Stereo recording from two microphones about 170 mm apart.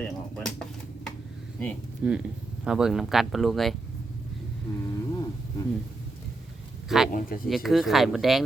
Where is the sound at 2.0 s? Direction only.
10° right (ahead or behind).